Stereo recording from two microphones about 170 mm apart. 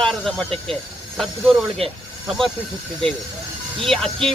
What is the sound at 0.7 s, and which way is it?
Snake, centre (ahead or behind).